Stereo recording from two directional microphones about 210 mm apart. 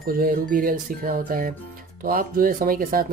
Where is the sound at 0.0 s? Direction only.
45° right (ahead or behind).